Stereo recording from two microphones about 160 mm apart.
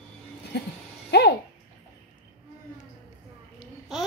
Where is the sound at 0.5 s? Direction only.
90° left.